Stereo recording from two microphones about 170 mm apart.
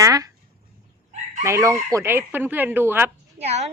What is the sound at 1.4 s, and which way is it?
Speech, 15° right (ahead or behind).